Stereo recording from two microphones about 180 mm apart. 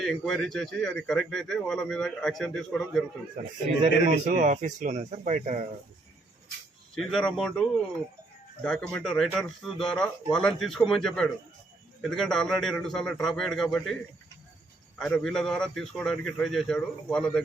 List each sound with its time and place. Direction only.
0.0 s speech: centre (ahead or behind)
3.8 s speech: 45° right (ahead or behind)
6.9 s speech: centre (ahead or behind)
8.6 s speech: 5° left (ahead or behind)
14.9 s speech: 5° left (ahead or behind)